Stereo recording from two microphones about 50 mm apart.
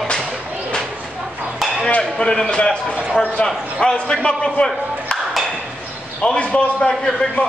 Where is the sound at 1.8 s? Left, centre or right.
Centre.